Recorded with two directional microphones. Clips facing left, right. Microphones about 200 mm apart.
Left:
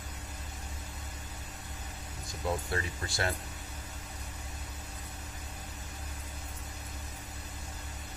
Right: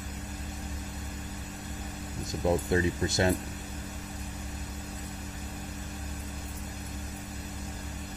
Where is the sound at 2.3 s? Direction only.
20° right (ahead or behind).